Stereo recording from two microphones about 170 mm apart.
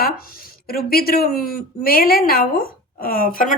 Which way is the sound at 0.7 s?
60° left (ahead or behind).